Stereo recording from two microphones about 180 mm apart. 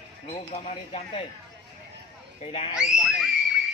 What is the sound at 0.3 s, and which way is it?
Speech, 35° left (ahead or behind).